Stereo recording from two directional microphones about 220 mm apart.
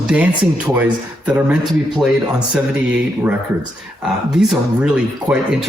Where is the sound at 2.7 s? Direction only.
5° right (ahead or behind).